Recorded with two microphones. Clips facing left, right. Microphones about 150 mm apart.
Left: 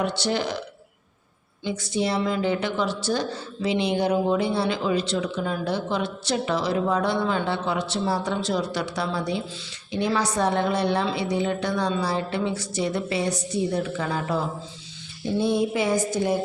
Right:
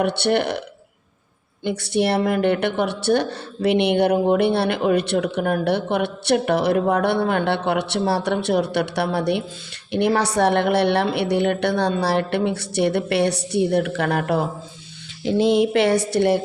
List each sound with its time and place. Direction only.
0.0 s a woman's voice: 60° right (ahead or behind)
1.6 s a woman's voice: 65° right (ahead or behind)
15.2 s a woman's voice: 90° right; by 16.4 s 70° right (ahead or behind)